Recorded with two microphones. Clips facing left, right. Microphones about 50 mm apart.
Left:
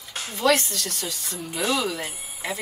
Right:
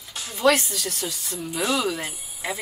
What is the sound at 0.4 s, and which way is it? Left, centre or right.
Speech, centre.